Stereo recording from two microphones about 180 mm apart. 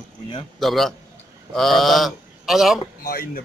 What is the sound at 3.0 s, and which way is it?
Speech, 55° left (ahead or behind).